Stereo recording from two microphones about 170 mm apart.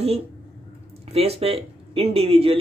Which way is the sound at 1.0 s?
35° right (ahead or behind).